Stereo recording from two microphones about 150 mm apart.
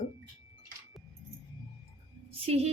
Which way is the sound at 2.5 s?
45° right (ahead or behind).